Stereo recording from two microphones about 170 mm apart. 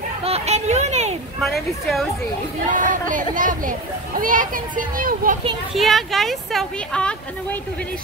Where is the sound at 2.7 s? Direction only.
50° right (ahead or behind).